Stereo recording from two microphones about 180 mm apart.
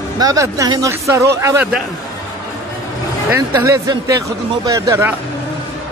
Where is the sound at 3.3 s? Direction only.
15° right (ahead or behind).